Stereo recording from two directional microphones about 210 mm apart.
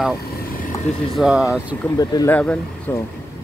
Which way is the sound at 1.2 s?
5° right (ahead or behind).